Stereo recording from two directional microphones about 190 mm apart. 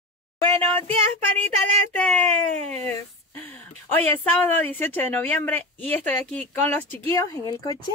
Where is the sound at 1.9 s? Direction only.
10° left (ahead or behind).